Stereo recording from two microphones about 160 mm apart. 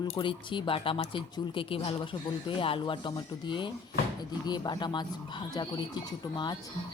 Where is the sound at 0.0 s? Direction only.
30° left (ahead or behind).